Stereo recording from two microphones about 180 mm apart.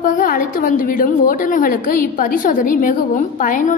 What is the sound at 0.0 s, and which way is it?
A woman's voice, 45° left (ahead or behind).